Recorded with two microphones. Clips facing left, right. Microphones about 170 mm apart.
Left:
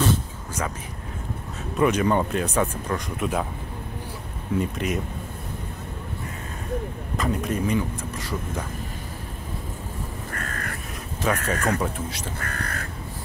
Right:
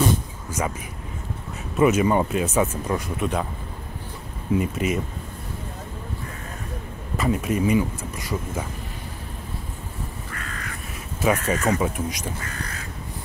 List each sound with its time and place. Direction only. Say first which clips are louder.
0.6 s speech: right 3 dB; 10° right (ahead or behind)
1.8 s speech: right 2 dB; 5° right (ahead or behind)
4.6 s speech: right 1 dB; 5° right (ahead or behind)
7.2 s speech: right 3 dB; 5° right (ahead or behind)
10.3 s bird: left 2 dB; 50° left (ahead or behind)
11.1 s speech: right 3 dB; 10° right (ahead or behind)
12.4 s duck: left 2 dB; 55° left (ahead or behind)